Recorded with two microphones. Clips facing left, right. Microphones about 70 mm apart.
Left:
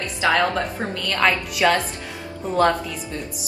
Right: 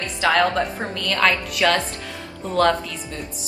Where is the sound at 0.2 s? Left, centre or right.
Left.